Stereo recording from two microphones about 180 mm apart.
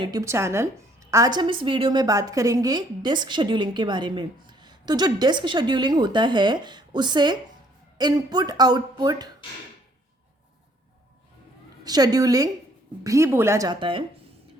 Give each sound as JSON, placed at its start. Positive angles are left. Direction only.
{"t": 0.0, "sound": "a woman's voice", "side_deg": -20}
{"t": 11.8, "sound": "a woman's voice", "side_deg": -20}